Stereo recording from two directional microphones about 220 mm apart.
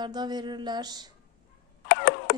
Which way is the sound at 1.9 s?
55° left (ahead or behind).